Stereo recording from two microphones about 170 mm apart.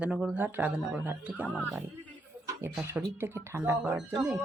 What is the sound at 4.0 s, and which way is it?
Speech, 5° right (ahead or behind).